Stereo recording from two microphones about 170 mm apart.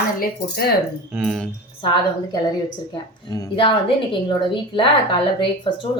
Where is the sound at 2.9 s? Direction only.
25° left (ahead or behind).